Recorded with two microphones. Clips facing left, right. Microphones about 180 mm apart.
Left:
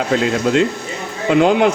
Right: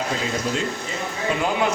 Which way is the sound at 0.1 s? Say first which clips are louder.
Left 9 dB; 70° left (ahead or behind).